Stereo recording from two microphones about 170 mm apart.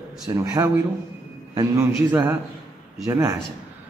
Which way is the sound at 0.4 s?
20° right (ahead or behind).